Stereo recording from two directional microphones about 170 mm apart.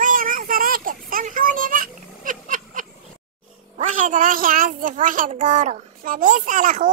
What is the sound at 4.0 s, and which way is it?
A child's voice, 50° right (ahead or behind).